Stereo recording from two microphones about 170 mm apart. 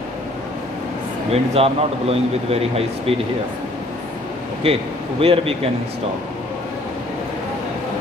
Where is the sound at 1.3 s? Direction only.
35° right (ahead or behind).